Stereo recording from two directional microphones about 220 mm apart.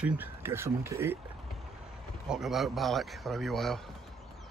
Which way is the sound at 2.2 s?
Centre (ahead or behind).